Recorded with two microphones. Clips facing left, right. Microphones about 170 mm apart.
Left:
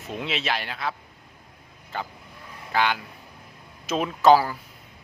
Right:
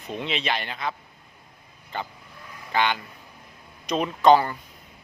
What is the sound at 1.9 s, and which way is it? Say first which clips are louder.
Speech: even; 5° left (ahead or behind).